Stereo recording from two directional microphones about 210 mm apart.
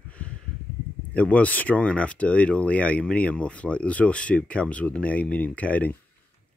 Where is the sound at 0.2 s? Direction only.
5° left (ahead or behind).